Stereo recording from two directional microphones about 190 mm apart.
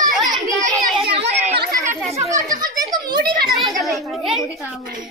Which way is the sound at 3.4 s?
Centre (ahead or behind).